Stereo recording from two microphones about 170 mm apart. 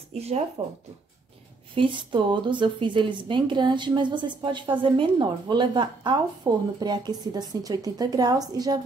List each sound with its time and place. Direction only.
0.1 s speech: 40° right (ahead or behind)
1.8 s a woman's voice: 30° right (ahead or behind)